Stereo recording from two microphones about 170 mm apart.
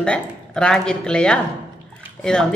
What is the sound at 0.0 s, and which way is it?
Speech, 5° left (ahead or behind).